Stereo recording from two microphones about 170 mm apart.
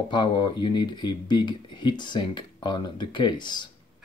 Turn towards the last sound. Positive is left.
turn(degrees=25)  # may be behind; listen again after turning